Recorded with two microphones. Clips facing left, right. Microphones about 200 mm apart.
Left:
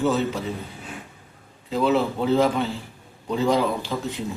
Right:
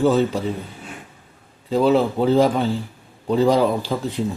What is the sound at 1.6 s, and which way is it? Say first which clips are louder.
A man's voice: right 4 dB; 35° right (ahead or behind).